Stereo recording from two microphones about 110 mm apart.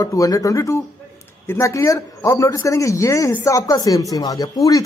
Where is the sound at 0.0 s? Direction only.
30° left (ahead or behind).